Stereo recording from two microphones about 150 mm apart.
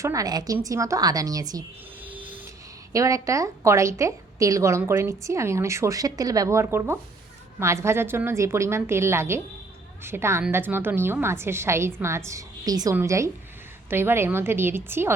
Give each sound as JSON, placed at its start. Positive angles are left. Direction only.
{"t": 0.0, "sound": "a woman's voice", "side_deg": -20}
{"t": 2.0, "sound": "vehicle", "side_deg": -10}
{"t": 2.9, "sound": "a woman's voice", "side_deg": -20}